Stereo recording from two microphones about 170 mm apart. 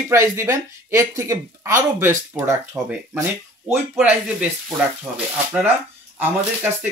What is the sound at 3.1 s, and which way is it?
Speech, 15° right (ahead or behind).